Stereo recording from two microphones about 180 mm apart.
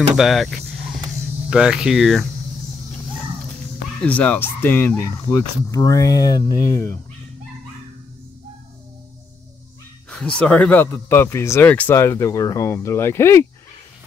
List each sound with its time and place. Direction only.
0.1 s speech: centre (ahead or behind)
4.0 s speech: 10° left (ahead or behind)
10.0 s speech: 5° left (ahead or behind)